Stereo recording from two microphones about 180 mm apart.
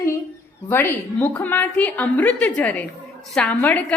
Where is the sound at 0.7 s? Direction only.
10° left (ahead or behind).